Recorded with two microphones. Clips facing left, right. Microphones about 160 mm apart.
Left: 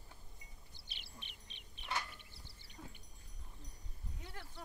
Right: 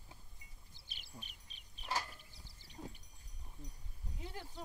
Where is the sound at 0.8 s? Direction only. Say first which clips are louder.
Right 3 dB; 45° right (ahead or behind).